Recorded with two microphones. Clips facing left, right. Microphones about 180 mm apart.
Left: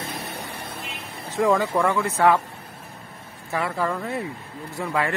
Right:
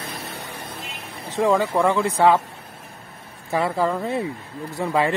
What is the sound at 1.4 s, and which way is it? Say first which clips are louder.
Speech: right 2 dB; 25° right (ahead or behind).